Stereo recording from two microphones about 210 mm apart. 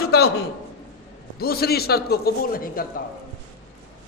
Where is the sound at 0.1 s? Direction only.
50° left (ahead or behind).